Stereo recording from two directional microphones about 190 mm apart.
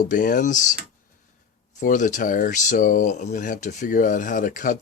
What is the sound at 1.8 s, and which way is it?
Speech, 40° left (ahead or behind).